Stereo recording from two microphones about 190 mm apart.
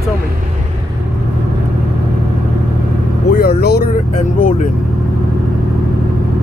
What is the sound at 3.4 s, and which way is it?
Vehicle, 55° left (ahead or behind).